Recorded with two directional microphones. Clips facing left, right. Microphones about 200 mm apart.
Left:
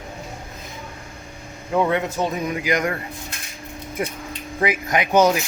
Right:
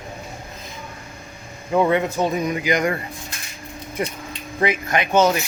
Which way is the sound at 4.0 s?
5° left (ahead or behind).